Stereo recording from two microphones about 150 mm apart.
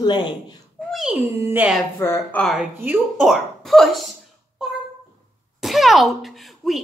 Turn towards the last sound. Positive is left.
turn(degrees=0)  # may be behind; listen again after turning